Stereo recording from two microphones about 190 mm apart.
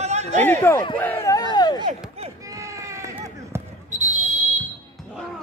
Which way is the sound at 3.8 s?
40° right (ahead or behind).